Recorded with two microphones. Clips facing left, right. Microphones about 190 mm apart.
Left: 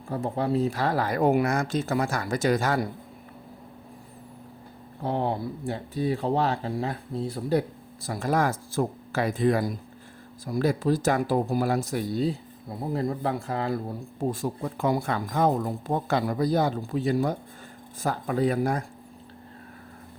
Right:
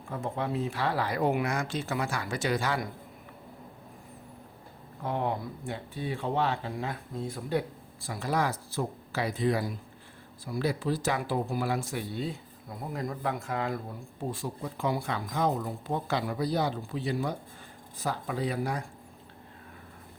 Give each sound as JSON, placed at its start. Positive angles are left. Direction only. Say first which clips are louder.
{"t": 0.1, "sound": "speech", "louder": "left 6 dB", "side_deg": 35}
{"t": 5.0, "sound": "speech", "louder": "left 4 dB", "side_deg": 30}